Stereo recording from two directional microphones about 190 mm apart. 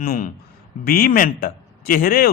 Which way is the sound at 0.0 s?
50° left (ahead or behind).